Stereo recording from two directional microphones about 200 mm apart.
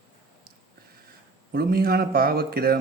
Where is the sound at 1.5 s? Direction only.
50° right (ahead or behind).